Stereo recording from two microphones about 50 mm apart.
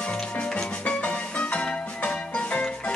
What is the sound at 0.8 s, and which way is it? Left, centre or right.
Music, left.